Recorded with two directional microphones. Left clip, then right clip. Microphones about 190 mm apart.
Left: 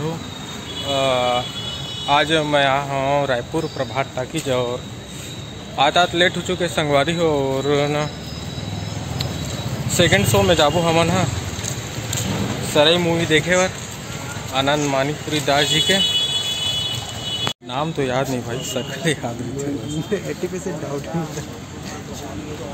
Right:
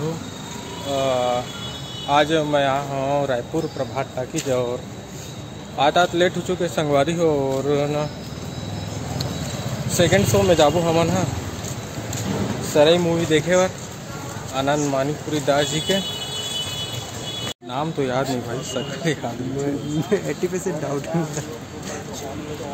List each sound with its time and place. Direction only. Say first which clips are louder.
0.9 s speech: left 2 dB; 5° right (ahead or behind)
5.8 s speech: left 1 dB; 5° right (ahead or behind)
9.9 s speech: left 1 dB; 10° right (ahead or behind)
12.7 s speech: even; 5° right (ahead or behind)
17.7 s speech: left 1 dB; centre (ahead or behind)
20.1 s speech: right 2 dB; 55° right (ahead or behind)